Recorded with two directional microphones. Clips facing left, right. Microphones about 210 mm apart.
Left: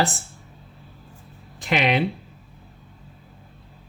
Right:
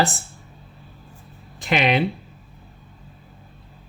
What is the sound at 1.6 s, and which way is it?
Speech, 25° right (ahead or behind).